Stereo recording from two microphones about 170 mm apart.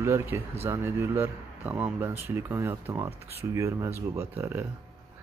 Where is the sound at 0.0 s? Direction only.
15° right (ahead or behind).